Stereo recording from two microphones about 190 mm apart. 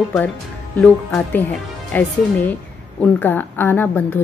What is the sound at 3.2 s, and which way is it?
Speech, 10° left (ahead or behind).